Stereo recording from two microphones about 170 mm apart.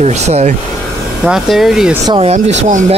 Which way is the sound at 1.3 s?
Centre (ahead or behind).